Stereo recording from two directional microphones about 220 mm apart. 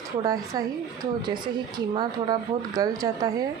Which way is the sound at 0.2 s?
15° right (ahead or behind).